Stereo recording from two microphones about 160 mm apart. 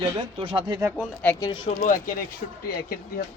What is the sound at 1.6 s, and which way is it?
Speech, 55° left (ahead or behind).